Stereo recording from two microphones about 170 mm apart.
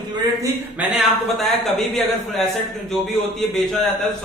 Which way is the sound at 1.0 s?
Centre (ahead or behind).